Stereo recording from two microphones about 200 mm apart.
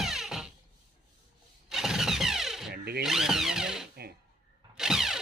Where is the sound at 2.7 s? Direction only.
50° right (ahead or behind).